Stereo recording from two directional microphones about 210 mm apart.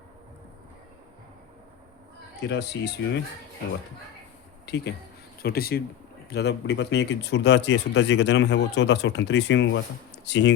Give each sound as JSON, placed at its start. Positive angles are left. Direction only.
{"t": 2.5, "sound": "speech", "side_deg": 55}
{"t": 4.7, "sound": "speech", "side_deg": 50}